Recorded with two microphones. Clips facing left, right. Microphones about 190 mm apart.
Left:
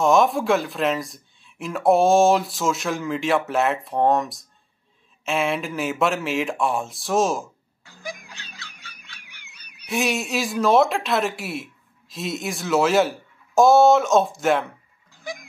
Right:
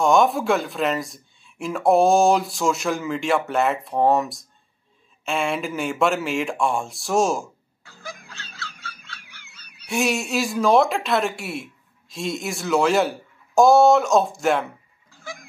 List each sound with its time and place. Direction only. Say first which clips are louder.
0.0 s speech: even; centre (ahead or behind)
7.8 s frog: left 3 dB; 15° left (ahead or behind)
9.6 s goose: right 1 dB; 15° left (ahead or behind)
9.8 s speech: right 1 dB; centre (ahead or behind)
15.3 s goat: left 4 dB; 15° left (ahead or behind)